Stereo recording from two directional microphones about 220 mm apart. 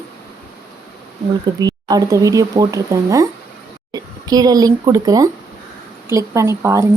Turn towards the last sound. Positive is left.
turn(degrees=-15)  # may be behind; listen again after turning